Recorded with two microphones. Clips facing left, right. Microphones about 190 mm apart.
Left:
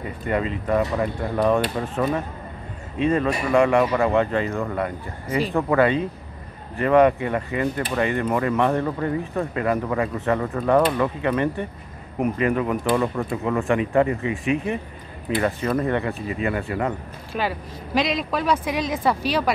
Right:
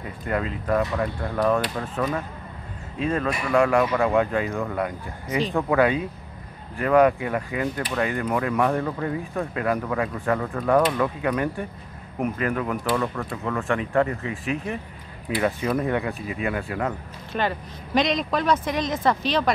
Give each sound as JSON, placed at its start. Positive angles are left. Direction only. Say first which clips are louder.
{"t": 0.3, "sound": "speech", "louder": "left 2 dB", "side_deg": 0}